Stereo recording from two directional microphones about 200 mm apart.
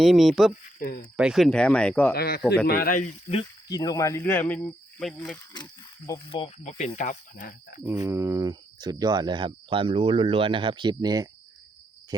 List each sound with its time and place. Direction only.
0.0 s speech: centre (ahead or behind)
0.8 s speech: 45° left (ahead or behind)
1.1 s speech: 5° right (ahead or behind)
2.1 s speech: 50° left (ahead or behind)
3.2 s speech: 25° left (ahead or behind); by 5.4 s 5° left (ahead or behind)
6.1 s speech: 15° left (ahead or behind)
6.7 s speech: 35° left (ahead or behind)
7.9 s speech: 15° right (ahead or behind)